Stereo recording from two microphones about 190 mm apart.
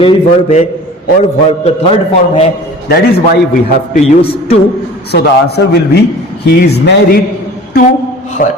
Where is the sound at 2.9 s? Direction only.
50° left (ahead or behind).